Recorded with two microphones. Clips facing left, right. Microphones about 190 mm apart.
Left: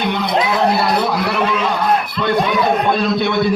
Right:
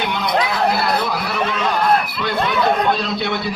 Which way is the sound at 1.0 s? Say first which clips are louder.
Left 5 dB; 65° left (ahead or behind).